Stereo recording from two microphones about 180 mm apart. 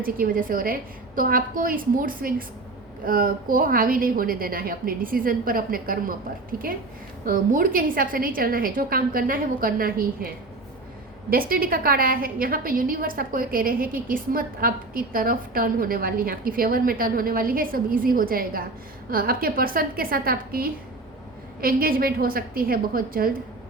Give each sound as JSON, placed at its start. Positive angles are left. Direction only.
{"t": 0.0, "sound": "a woman's voice", "side_deg": -50}